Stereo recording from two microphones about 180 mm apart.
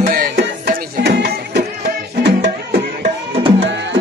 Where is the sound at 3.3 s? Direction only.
35° right (ahead or behind).